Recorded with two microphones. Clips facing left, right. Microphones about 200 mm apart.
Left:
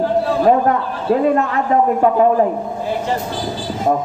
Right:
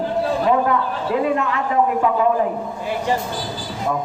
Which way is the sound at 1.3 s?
45° left (ahead or behind).